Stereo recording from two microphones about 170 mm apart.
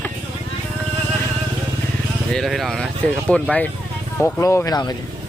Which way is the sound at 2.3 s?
Centre (ahead or behind).